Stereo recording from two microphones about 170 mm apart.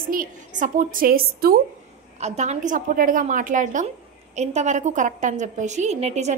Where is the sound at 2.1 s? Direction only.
40° right (ahead or behind).